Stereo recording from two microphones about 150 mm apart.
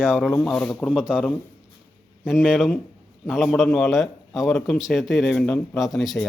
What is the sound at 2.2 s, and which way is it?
A man's voice, 5° right (ahead or behind).